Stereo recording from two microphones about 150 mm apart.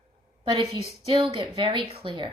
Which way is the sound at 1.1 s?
35° right (ahead or behind).